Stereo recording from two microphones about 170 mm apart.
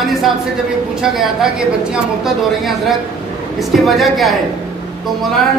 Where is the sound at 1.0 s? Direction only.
Centre (ahead or behind).